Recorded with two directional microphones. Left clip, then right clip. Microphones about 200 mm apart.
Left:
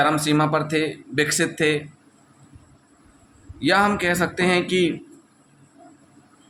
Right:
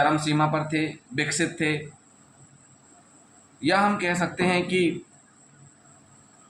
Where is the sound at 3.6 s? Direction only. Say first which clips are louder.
Left 3 dB; 45° left (ahead or behind).